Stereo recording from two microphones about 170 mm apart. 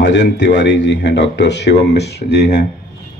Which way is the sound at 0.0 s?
90° left.